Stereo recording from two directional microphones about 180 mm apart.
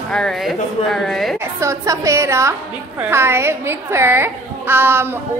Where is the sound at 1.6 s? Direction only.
15° right (ahead or behind).